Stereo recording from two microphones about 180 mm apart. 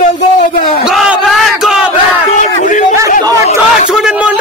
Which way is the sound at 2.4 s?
45° left (ahead or behind).